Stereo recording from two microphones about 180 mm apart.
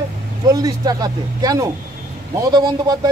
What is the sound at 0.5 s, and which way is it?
Speech, 20° right (ahead or behind).